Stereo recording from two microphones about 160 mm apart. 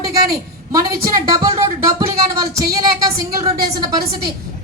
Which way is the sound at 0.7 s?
20° right (ahead or behind).